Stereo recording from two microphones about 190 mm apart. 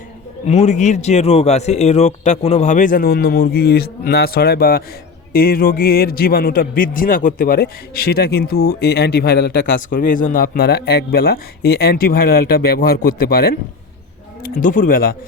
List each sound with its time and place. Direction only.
0.4 s a man's voice: 35° left (ahead or behind)